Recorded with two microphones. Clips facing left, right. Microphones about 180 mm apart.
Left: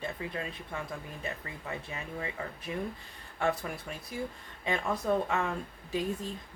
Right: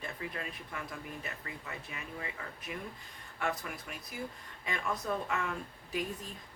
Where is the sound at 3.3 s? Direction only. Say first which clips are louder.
Left 5 dB; 30° left (ahead or behind).